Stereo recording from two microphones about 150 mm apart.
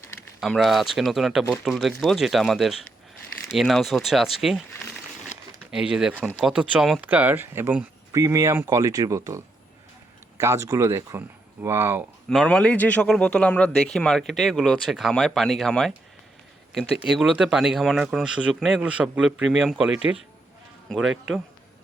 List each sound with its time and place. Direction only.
0.3 s speech: centre (ahead or behind)
5.7 s speech: 5° right (ahead or behind)
10.4 s speech: 20° right (ahead or behind)
12.3 s a man's voice: 5° left (ahead or behind)
17.0 s speech: 5° right (ahead or behind)